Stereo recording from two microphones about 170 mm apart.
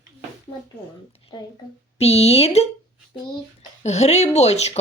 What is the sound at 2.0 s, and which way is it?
Speech, 35° left (ahead or behind).